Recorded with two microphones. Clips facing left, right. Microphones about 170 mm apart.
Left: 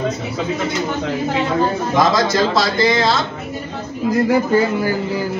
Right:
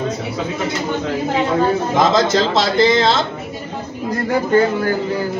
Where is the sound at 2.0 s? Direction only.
25° right (ahead or behind).